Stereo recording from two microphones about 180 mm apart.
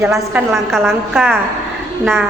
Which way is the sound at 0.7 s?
Centre (ahead or behind).